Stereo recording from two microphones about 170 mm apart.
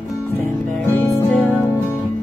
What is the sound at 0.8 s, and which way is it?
Music, 15° left (ahead or behind).